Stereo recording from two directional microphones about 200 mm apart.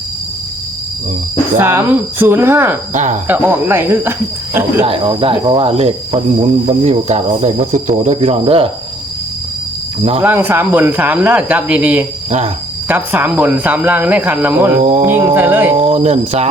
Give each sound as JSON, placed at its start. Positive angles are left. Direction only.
{"t": 1.5, "sound": "speech", "side_deg": -10}
{"t": 2.9, "sound": "speech", "side_deg": -40}
{"t": 3.2, "sound": "speech", "side_deg": -10}
{"t": 4.9, "sound": "speech", "side_deg": -25}
{"t": 10.2, "sound": "speech", "side_deg": -10}
{"t": 14.8, "sound": "speech", "side_deg": -35}
{"t": 15.1, "sound": "speech", "side_deg": -10}
{"t": 15.8, "sound": "speech", "side_deg": -30}